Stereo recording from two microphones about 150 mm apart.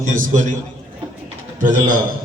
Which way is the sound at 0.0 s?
60° right (ahead or behind).